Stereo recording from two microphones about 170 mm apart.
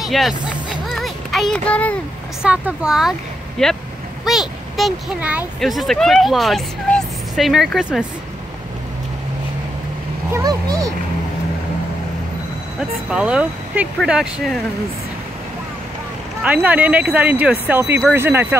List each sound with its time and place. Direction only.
0.0 s speech: centre (ahead or behind)
0.5 s a sound: centre (ahead or behind)
2.4 s speech: 5° right (ahead or behind)
10.3 s a child's voice: 20° right (ahead or behind)
13.1 s speech: 5° right (ahead or behind)
16.4 s speech: 10° right (ahead or behind)